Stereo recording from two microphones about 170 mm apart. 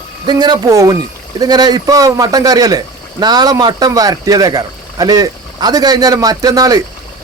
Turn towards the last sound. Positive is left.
turn(degrees=-20)  # may be behind; listen again after turning